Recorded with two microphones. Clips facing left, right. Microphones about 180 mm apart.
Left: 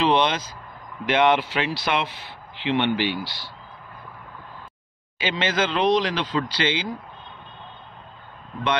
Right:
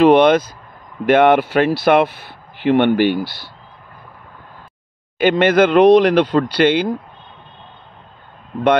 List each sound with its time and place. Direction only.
0.0 s speech: 55° right (ahead or behind)
5.2 s speech: 55° right (ahead or behind)